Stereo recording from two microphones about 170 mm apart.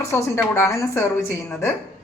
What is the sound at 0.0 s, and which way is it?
A woman's voice, 15° left (ahead or behind).